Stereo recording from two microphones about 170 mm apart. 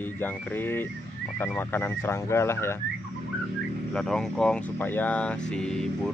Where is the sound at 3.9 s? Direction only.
5° left (ahead or behind).